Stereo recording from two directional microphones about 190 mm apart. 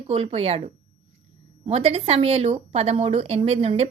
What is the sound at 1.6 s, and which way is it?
A woman's voice, 30° right (ahead or behind).